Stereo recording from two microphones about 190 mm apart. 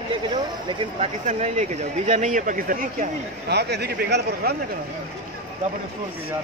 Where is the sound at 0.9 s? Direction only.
35° right (ahead or behind); by 4.6 s 55° right (ahead or behind).